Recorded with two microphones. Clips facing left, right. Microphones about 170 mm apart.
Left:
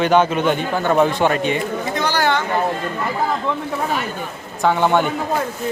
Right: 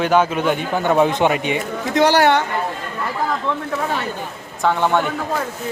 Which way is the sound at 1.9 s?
75° right (ahead or behind).